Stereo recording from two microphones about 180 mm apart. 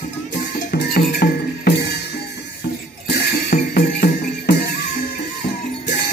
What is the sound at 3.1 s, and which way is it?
Music, 55° left (ahead or behind).